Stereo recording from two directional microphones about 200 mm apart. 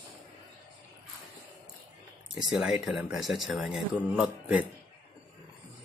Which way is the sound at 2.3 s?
Centre (ahead or behind).